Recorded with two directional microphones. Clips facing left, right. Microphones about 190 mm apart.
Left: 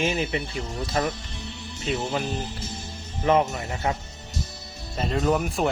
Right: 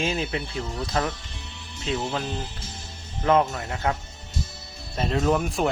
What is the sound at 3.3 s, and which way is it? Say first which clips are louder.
Speech: even; 10° left (ahead or behind).